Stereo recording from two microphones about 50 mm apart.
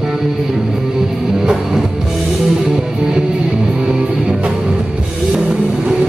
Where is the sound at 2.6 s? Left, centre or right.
Centre.